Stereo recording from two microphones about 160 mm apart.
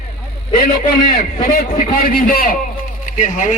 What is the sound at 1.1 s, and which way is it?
A man's voice, 60° left (ahead or behind).